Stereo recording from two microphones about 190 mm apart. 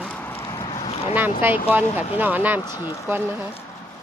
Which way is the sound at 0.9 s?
30° left (ahead or behind).